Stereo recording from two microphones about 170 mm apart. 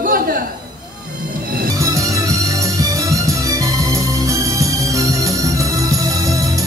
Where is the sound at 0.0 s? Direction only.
60° right (ahead or behind).